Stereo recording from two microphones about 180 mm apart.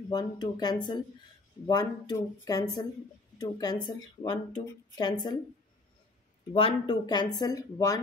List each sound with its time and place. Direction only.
0.1 s speech: 20° left (ahead or behind)
6.5 s speech: 30° left (ahead or behind)